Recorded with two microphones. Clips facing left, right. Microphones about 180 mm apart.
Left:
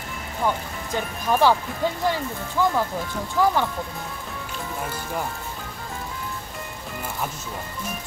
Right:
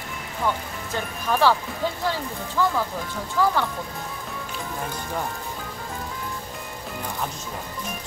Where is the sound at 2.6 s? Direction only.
15° left (ahead or behind).